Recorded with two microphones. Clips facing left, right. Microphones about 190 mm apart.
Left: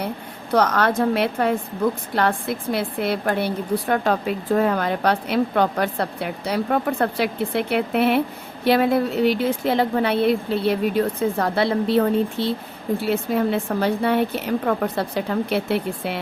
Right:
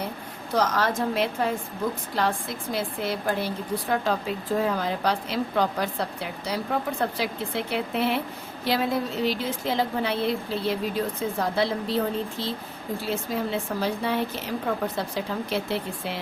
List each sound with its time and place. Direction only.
0.5 s a woman's voice: 60° left (ahead or behind)